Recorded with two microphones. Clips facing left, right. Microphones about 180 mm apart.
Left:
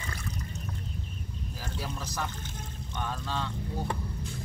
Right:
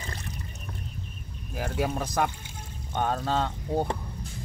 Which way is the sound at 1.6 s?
55° right (ahead or behind).